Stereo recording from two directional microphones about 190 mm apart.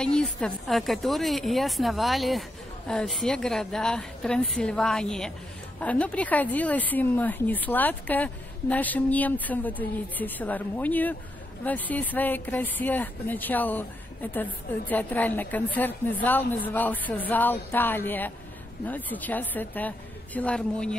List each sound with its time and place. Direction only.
0.0 s a woman's voice: 5° left (ahead or behind)